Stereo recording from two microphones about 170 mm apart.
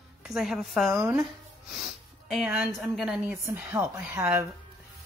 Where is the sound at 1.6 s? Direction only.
Centre (ahead or behind).